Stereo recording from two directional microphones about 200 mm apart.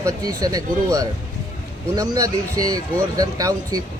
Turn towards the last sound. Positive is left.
turn(degrees=-20)  # may be behind; listen again after turning